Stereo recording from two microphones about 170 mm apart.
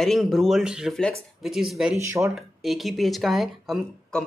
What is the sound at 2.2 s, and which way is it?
Speech, centre (ahead or behind).